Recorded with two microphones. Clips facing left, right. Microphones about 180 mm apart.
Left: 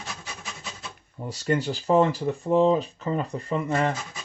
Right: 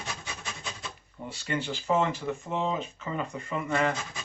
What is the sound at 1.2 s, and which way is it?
Speech, 40° left (ahead or behind).